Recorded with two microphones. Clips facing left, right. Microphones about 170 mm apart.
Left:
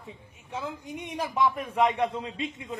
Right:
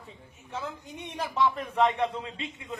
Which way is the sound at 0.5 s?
10° left (ahead or behind).